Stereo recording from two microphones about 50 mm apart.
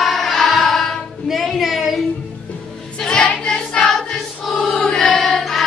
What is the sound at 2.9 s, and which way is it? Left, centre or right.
Choir, centre.